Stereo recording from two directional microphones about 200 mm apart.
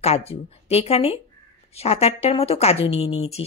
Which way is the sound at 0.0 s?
30° left (ahead or behind).